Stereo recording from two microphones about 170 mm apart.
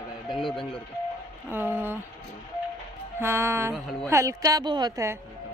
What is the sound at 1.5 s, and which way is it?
Speech, 10° right (ahead or behind).